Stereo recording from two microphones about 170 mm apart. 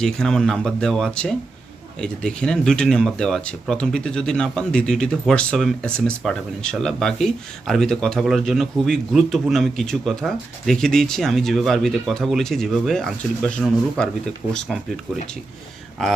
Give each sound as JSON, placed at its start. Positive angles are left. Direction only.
{"t": 0.0, "sound": "speech", "side_deg": 5}